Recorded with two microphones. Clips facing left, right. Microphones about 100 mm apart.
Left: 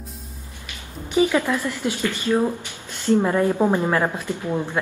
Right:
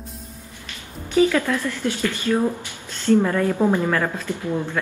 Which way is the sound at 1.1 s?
15° left (ahead or behind).